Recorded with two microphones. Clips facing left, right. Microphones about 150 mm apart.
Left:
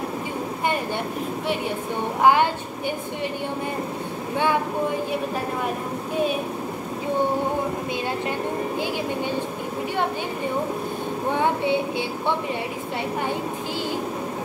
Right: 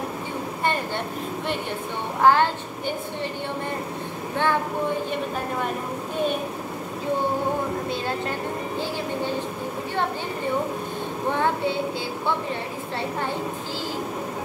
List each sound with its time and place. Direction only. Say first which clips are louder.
2.2 s a woman's voice: even; 15° left (ahead or behind)
11.3 s a woman's voice: left 1 dB; 15° left (ahead or behind)